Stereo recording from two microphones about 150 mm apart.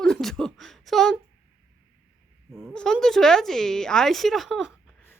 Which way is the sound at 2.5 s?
Centre (ahead or behind).